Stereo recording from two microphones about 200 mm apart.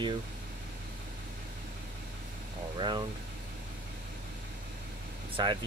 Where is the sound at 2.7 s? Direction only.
20° right (ahead or behind).